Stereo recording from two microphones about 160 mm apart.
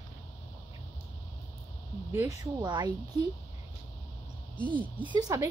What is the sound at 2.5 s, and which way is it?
Speech, 25° right (ahead or behind).